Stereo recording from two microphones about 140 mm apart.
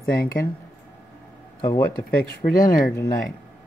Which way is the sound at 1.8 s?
90° left.